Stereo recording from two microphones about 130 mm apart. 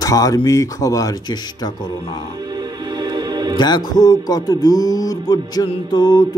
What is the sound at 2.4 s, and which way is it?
Music, 30° right (ahead or behind).